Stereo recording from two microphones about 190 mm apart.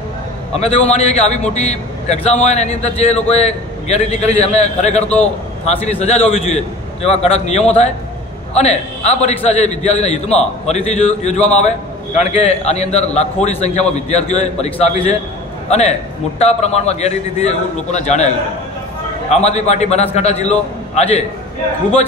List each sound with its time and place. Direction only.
0.6 s a man's voice: 35° left (ahead or behind)
19.3 s a man's voice: 35° left (ahead or behind)